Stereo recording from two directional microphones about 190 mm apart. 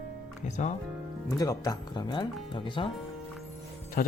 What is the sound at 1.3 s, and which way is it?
Speech, 20° left (ahead or behind).